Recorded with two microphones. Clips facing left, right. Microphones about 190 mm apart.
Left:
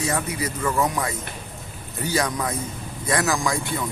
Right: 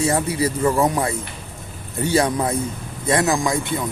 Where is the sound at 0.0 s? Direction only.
30° right (ahead or behind).